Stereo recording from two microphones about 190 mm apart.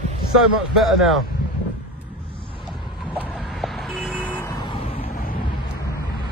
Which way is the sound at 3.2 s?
5° right (ahead or behind).